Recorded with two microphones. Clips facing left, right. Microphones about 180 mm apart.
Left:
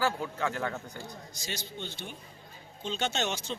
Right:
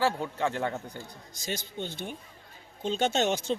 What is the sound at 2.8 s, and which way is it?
Speech, 50° right (ahead or behind).